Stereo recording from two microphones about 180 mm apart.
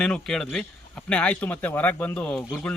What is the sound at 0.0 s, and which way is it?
A man's voice, 5° left (ahead or behind).